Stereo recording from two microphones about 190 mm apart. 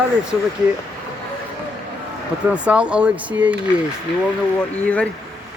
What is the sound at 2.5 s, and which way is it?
Speech, 5° right (ahead or behind).